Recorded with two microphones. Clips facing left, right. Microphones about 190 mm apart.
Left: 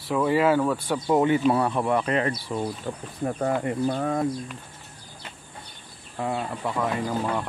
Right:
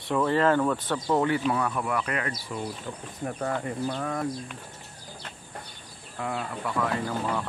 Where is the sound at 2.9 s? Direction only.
50° left (ahead or behind).